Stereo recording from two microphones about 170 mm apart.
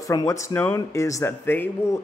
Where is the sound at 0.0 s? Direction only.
20° left (ahead or behind).